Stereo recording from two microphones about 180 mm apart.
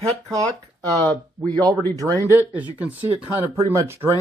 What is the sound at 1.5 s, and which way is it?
Speech, 20° right (ahead or behind).